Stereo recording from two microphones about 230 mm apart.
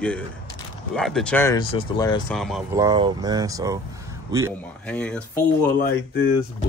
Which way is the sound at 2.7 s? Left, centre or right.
Centre.